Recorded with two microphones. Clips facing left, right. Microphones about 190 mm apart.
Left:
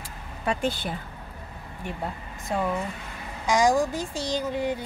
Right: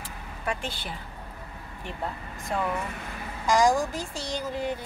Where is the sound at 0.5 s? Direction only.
45° left (ahead or behind).